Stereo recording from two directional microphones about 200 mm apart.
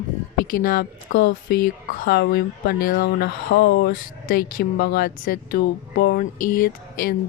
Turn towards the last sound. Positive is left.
turn(degrees=45)  # may be behind; listen again after turning